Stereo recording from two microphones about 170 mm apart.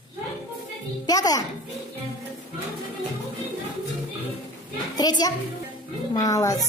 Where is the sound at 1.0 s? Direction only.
20° left (ahead or behind).